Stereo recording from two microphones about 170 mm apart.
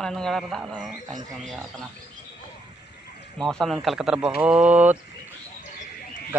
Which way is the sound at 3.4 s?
Centre (ahead or behind).